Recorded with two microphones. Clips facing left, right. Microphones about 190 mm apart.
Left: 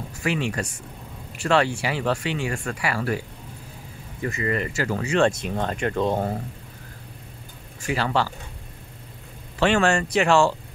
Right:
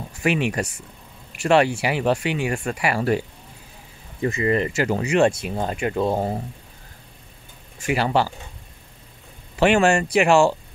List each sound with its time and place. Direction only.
0.2 s speech: 20° right (ahead or behind)
7.8 s speech: 15° right (ahead or behind)
9.6 s speech: 15° right (ahead or behind)